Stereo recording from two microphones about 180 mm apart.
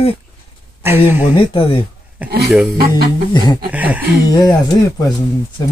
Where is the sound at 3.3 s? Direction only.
25° left (ahead or behind).